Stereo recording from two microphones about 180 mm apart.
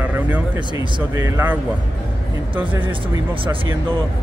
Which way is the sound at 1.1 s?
15° right (ahead or behind).